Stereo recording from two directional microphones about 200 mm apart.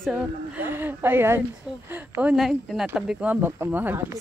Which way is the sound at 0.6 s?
10° right (ahead or behind).